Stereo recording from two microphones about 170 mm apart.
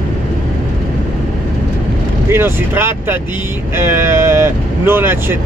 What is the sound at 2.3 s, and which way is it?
Speech, 15° right (ahead or behind).